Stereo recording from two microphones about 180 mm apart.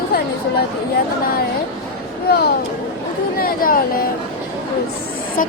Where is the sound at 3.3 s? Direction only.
55° left (ahead or behind).